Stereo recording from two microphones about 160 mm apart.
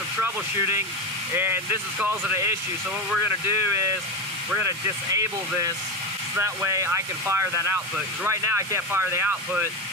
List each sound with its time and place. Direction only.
1.3 s speech: 15° right (ahead or behind)
4.8 s speech: 20° right (ahead or behind)